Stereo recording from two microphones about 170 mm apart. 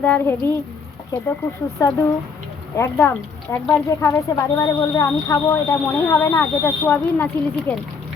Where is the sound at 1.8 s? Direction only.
15° left (ahead or behind).